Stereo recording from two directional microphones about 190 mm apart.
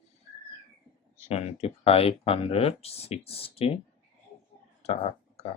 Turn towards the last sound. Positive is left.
turn(degrees=30)  # may be behind; listen again after turning